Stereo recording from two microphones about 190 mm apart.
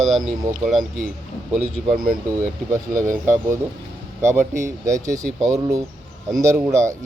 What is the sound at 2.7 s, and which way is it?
Speech, 45° right (ahead or behind).